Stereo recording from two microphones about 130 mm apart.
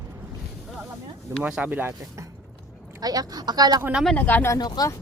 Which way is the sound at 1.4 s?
10° right (ahead or behind).